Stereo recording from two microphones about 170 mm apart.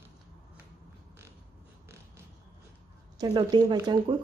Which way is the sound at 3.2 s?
25° right (ahead or behind).